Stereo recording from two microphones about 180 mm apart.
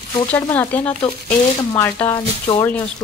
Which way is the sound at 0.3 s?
10° left (ahead or behind).